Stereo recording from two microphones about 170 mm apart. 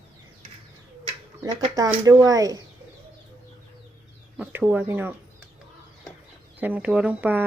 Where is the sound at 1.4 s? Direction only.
20° right (ahead or behind).